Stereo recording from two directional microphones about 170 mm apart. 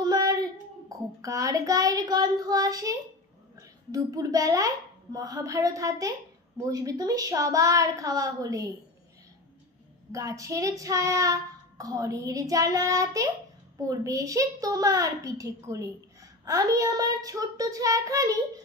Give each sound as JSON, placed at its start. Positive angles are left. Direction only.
{"t": 0.0, "sound": "child singing", "side_deg": -20}
{"t": 3.5, "sound": "a child's voice", "side_deg": -20}
{"t": 10.1, "sound": "a child's voice", "side_deg": -20}